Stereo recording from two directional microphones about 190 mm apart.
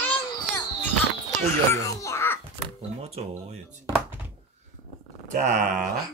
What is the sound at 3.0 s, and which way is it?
Speech, 35° right (ahead or behind).